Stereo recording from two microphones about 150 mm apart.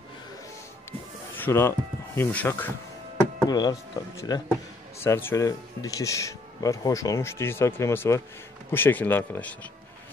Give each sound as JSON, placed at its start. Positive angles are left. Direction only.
{"t": 1.3, "sound": "speech", "side_deg": 15}
{"t": 3.4, "sound": "speech", "side_deg": 25}